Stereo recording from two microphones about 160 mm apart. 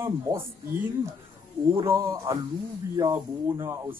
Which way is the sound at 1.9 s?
20° right (ahead or behind).